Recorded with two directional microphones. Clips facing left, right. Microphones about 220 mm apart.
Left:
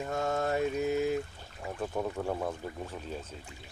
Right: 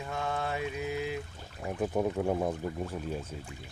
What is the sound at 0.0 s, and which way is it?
Mantra, 45° left (ahead or behind).